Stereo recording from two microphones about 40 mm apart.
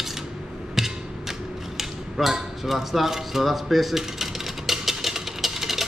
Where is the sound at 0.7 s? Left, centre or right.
Centre.